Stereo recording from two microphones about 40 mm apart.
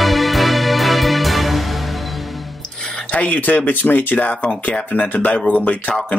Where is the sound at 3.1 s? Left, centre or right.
Left.